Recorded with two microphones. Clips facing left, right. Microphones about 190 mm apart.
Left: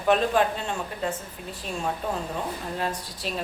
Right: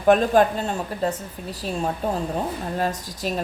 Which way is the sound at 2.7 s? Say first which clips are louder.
Right 4 dB; 45° right (ahead or behind).